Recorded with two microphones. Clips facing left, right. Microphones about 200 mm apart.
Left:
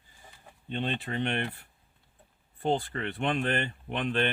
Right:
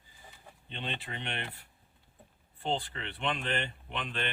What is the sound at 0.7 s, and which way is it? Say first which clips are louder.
Speech: left 8 dB; 45° left (ahead or behind).